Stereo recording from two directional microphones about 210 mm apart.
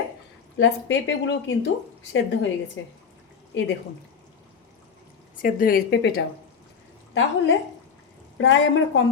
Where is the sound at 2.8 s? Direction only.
65° left (ahead or behind).